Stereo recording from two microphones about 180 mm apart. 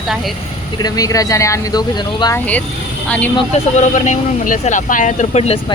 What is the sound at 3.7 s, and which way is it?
Speech, 40° left (ahead or behind).